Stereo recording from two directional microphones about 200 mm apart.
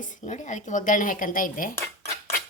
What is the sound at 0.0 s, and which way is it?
A woman's voice, 40° left (ahead or behind).